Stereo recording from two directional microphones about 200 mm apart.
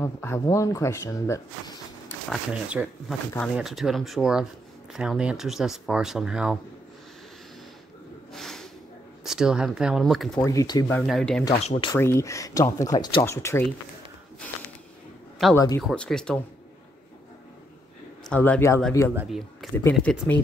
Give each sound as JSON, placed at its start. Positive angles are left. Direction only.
{"t": 0.0, "sound": "speech", "side_deg": 10}
{"t": 2.2, "sound": "speech", "side_deg": -5}
{"t": 8.3, "sound": "snort", "side_deg": 0}
{"t": 9.2, "sound": "speech", "side_deg": -5}
{"t": 10.4, "sound": "speech", "side_deg": 15}
{"t": 11.0, "sound": "speech", "side_deg": 0}
{"t": 11.4, "sound": "speech", "side_deg": 30}
{"t": 11.9, "sound": "speech", "side_deg": 15}
{"t": 15.5, "sound": "speech", "side_deg": 15}
{"t": 15.8, "sound": "speech", "side_deg": 5}
{"t": 18.2, "sound": "speech", "side_deg": 5}
{"t": 19.1, "sound": "speech", "side_deg": 0}